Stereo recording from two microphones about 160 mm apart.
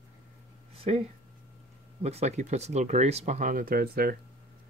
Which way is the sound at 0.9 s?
40° right (ahead or behind).